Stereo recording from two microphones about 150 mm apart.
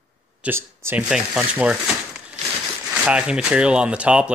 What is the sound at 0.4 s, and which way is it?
Speech, 15° right (ahead or behind).